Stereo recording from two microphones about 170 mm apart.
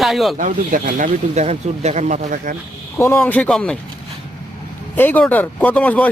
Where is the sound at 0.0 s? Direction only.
Centre (ahead or behind).